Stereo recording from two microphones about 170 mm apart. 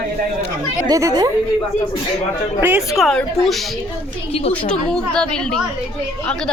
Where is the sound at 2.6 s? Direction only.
15° right (ahead or behind).